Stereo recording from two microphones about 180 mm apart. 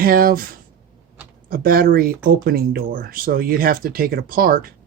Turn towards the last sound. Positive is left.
turn(degrees=-55)  # may be behind; listen again after turning